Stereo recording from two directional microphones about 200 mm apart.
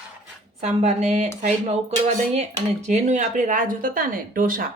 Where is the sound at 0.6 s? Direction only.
35° right (ahead or behind).